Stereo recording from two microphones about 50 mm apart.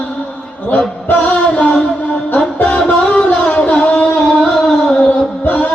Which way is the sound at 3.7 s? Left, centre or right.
Left.